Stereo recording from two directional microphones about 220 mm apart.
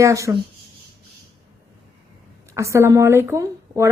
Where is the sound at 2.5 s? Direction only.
15° right (ahead or behind).